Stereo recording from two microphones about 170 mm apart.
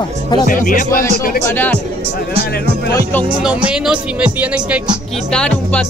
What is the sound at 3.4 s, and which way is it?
Speech, 5° right (ahead or behind).